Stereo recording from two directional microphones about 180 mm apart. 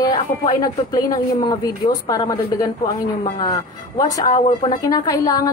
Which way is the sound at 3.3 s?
30° left (ahead or behind).